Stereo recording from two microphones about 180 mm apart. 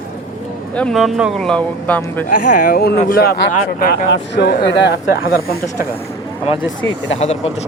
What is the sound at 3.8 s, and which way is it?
Speech, 65° left (ahead or behind).